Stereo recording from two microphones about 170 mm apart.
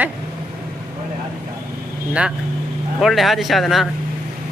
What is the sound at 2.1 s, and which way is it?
Speech, 5° right (ahead or behind).